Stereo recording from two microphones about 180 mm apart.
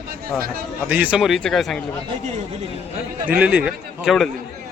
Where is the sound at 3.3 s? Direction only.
5° right (ahead or behind).